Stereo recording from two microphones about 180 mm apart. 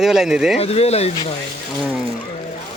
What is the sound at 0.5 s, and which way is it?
Speech, 35° left (ahead or behind).